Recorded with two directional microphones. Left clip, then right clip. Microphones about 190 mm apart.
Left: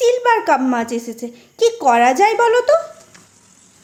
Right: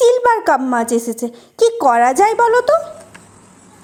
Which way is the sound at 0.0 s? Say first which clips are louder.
Right 3 dB; 30° right (ahead or behind).